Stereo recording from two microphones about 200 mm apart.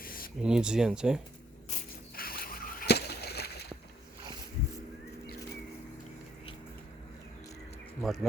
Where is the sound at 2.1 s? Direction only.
45° left (ahead or behind).